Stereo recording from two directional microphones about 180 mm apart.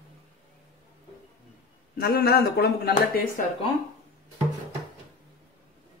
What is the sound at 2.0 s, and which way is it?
Speech, 60° left (ahead or behind).